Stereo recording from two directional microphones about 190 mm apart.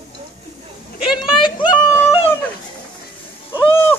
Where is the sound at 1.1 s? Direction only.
25° left (ahead or behind).